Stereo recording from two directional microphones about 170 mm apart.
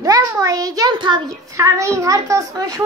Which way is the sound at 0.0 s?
20° right (ahead or behind).